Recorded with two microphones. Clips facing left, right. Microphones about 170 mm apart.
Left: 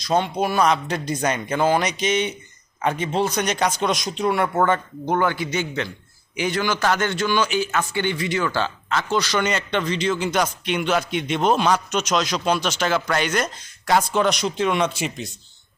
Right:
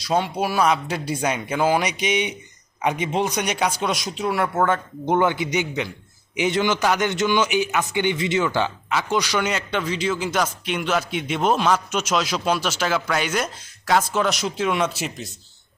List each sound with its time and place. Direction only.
0.0 s speech: 10° right (ahead or behind)
5.0 s a man's voice: 20° right (ahead or behind); by 15.3 s centre (ahead or behind)